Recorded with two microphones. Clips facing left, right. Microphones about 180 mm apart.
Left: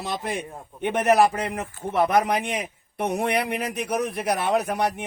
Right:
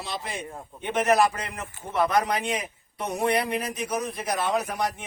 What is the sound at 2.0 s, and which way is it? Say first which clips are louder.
Speech: left 3 dB; 20° left (ahead or behind).